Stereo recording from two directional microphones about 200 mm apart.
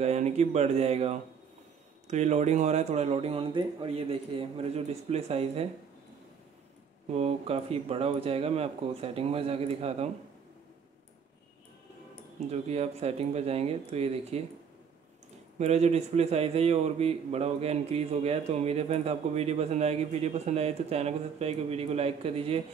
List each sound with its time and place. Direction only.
0.0 s a man's voice: 35° right (ahead or behind)
7.1 s speech: 30° right (ahead or behind)
12.4 s a man's voice: 30° right (ahead or behind)
15.6 s a man's voice: 35° right (ahead or behind)